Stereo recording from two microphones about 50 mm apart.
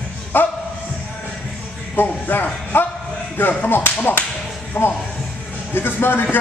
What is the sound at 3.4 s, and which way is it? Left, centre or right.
Whip, left.